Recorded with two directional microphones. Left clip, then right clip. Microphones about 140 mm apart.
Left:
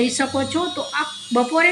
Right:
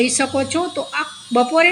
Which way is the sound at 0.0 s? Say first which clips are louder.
Right 3 dB; 30° right (ahead or behind).